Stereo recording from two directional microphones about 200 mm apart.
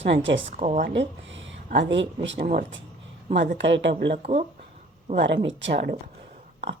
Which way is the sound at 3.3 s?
65° right (ahead or behind).